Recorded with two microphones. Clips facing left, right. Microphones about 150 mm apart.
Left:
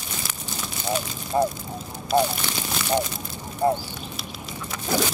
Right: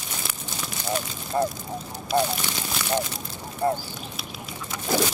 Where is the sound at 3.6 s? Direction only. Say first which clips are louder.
Left 3 dB; 20° left (ahead or behind).